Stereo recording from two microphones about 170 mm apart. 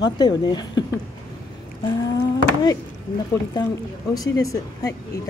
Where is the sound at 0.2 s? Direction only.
25° left (ahead or behind).